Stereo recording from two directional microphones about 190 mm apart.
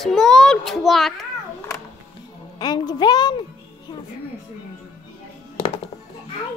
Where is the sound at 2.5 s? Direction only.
20° left (ahead or behind).